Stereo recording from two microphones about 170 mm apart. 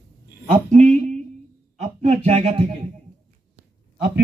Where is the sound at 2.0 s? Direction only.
40° right (ahead or behind).